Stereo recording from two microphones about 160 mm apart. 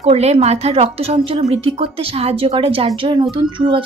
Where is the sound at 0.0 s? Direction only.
40° right (ahead or behind).